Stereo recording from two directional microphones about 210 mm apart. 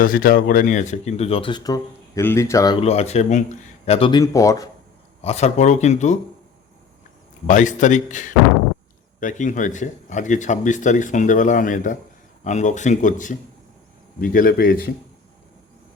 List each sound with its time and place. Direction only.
0.0 s speech: 45° left (ahead or behind); by 2.7 s 15° left (ahead or behind)
2.8 s speech: 30° left (ahead or behind); by 4.7 s 15° left (ahead or behind)
5.2 s speech: 30° left (ahead or behind)
7.4 s speech: 35° left (ahead or behind)